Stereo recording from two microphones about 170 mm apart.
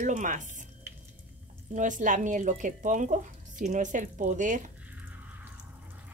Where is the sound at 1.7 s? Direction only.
50° right (ahead or behind).